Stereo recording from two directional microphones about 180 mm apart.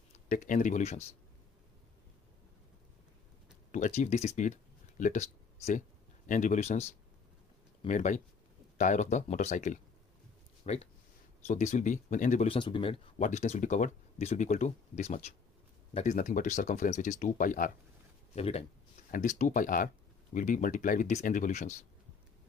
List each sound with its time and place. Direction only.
0.3 s speech: 45° left (ahead or behind)
3.7 s speech: 45° left (ahead or behind)
12.5 s speech: 25° left (ahead or behind)
13.2 s speech: 40° left (ahead or behind)
18.3 s a sound: 35° left (ahead or behind)
19.1 s speech: 45° left (ahead or behind)